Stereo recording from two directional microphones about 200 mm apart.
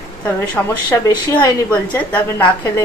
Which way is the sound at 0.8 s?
15° left (ahead or behind).